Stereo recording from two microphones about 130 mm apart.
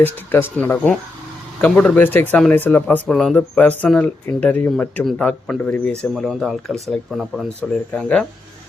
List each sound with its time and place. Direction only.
0.0 s speech: 15° left (ahead or behind)
5.5 s speech: 15° left (ahead or behind)
6.0 s speech: centre (ahead or behind)